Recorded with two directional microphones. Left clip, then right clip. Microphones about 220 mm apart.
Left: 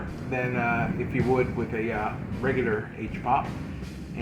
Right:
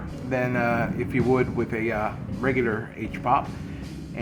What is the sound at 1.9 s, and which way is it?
Speech, 40° right (ahead or behind).